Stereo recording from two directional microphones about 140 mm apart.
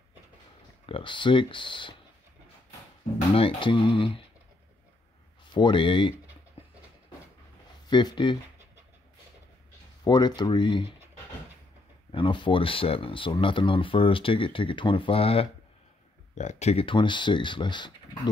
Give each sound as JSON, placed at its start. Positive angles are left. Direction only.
{"t": 0.8, "sound": "speech", "side_deg": 35}
{"t": 3.3, "sound": "speech", "side_deg": 40}
{"t": 5.4, "sound": "speech", "side_deg": 35}
{"t": 7.9, "sound": "speech", "side_deg": 35}
{"t": 10.0, "sound": "speech", "side_deg": 30}
{"t": 12.1, "sound": "speech", "side_deg": 35}
{"t": 16.3, "sound": "speech", "side_deg": 55}
{"t": 16.8, "sound": "speech", "side_deg": 35}